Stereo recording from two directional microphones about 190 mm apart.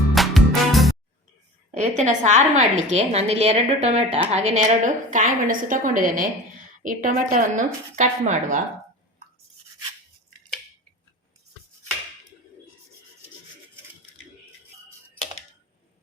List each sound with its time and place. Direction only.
0.1 s music: centre (ahead or behind)
1.7 s a woman's voice: 40° right (ahead or behind)